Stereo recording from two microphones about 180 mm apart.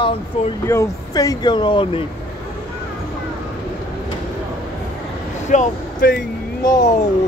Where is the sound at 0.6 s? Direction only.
15° left (ahead or behind).